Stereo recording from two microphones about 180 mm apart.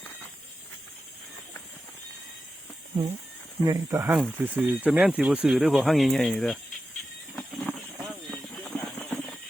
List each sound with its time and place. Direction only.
3.6 s speech: 20° right (ahead or behind); by 6.6 s centre (ahead or behind)
7.3 s a sound: 5° left (ahead or behind)
8.6 s clip-clop: centre (ahead or behind)